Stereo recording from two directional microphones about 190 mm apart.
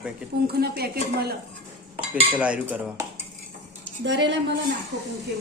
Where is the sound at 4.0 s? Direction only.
70° right (ahead or behind).